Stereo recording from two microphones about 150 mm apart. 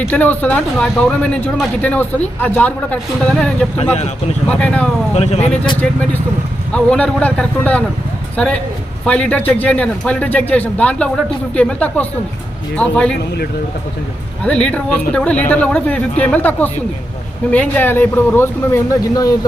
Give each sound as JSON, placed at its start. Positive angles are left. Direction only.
{"t": 0.1, "sound": "speech", "side_deg": 10}
{"t": 5.1, "sound": "speech", "side_deg": 45}
{"t": 5.8, "sound": "speech", "side_deg": 5}
{"t": 9.0, "sound": "speech", "side_deg": 10}
{"t": 14.4, "sound": "speech", "side_deg": 5}